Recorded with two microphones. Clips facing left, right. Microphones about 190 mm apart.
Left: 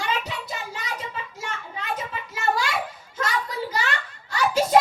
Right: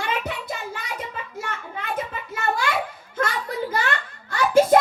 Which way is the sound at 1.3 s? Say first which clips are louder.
Right 2 dB; 55° right (ahead or behind).